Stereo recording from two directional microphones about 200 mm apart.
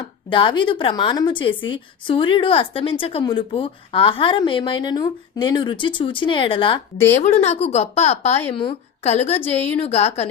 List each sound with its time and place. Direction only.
0.3 s a woman's voice: 25° left (ahead or behind)
9.4 s a woman's voice: 10° left (ahead or behind)
9.8 s a woman's voice: 30° left (ahead or behind)